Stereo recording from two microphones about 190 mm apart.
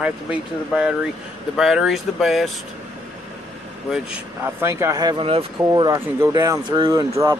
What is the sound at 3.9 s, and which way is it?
Speech, 10° right (ahead or behind).